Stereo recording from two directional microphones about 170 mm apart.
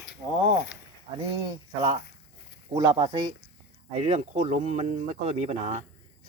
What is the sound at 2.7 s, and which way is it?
Speech, 25° right (ahead or behind).